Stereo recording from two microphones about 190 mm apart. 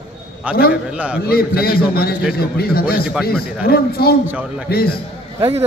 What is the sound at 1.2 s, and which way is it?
A man's voice, 55° left (ahead or behind).